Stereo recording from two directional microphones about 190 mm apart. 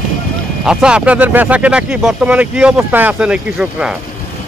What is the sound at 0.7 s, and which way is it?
Speech, 5° right (ahead or behind).